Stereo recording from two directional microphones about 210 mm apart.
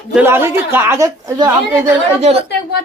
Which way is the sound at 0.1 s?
10° right (ahead or behind).